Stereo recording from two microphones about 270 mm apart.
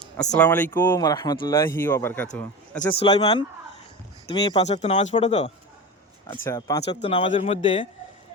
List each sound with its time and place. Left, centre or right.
0.3 s speech: centre
2.9 s speech: left
6.2 s speech: centre